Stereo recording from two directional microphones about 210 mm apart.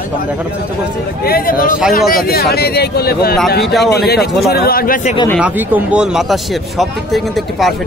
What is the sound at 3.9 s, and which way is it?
A man's voice, 50° left (ahead or behind).